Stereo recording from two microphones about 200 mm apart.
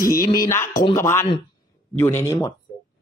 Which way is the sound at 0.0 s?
45° left (ahead or behind).